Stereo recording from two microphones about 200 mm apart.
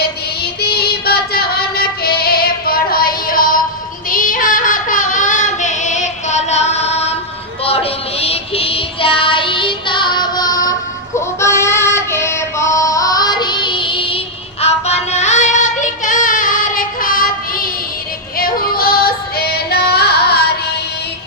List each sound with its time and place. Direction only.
0.4 s music: 50° left (ahead or behind)
4.1 s female singing: 45° left (ahead or behind)
7.6 s child singing: 30° left (ahead or behind)
11.3 s female singing: 15° left (ahead or behind)
14.6 s music: 30° left (ahead or behind)
18.3 s female singing: 45° left (ahead or behind)